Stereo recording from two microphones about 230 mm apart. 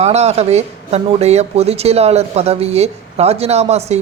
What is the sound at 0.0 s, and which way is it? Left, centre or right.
Speech, right.